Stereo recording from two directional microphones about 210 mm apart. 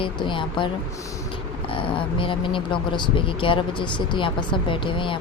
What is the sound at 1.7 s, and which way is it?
A woman's voice, 25° left (ahead or behind).